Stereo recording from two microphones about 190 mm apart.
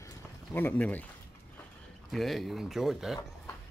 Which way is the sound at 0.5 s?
10° left (ahead or behind).